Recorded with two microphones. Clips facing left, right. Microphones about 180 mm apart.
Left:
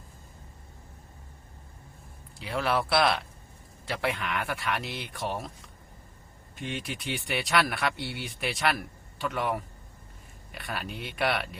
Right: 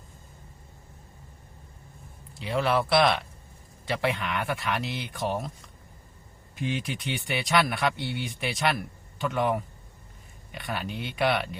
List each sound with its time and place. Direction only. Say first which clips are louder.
2.4 s speech: right 3 dB; centre (ahead or behind)